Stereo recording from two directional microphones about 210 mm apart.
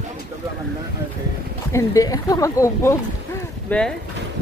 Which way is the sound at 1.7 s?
15° left (ahead or behind).